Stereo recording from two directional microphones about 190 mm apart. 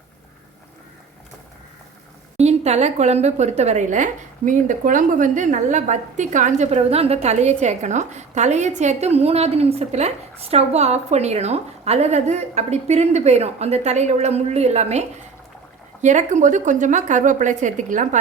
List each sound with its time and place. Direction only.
2.4 s a woman's voice: 35° right (ahead or behind)